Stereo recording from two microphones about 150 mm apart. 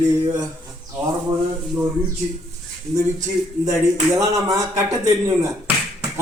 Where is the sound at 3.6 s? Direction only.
25° right (ahead or behind).